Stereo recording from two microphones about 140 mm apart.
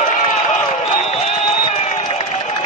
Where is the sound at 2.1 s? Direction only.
60° left (ahead or behind).